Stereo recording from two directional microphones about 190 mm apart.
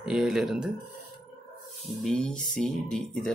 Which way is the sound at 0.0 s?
Centre (ahead or behind).